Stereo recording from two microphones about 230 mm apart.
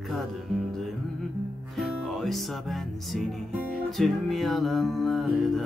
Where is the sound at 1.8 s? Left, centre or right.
Centre.